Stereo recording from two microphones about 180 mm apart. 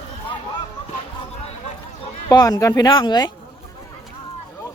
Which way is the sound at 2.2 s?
20° left (ahead or behind).